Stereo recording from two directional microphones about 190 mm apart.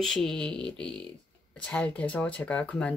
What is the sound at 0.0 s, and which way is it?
Speech, 5° left (ahead or behind).